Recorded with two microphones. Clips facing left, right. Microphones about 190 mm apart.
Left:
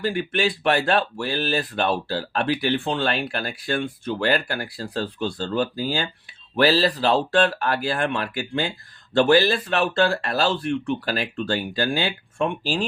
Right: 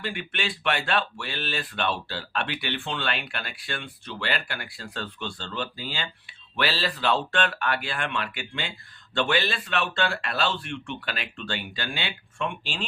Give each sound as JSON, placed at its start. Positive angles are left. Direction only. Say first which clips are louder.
{"t": 0.0, "sound": "speech", "louder": "left 9 dB", "side_deg": 40}